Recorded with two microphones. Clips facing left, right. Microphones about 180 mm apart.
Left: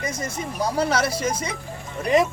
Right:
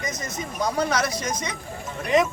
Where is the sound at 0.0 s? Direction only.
30° left (ahead or behind).